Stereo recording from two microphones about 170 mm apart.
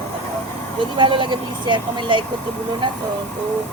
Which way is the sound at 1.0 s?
30° right (ahead or behind).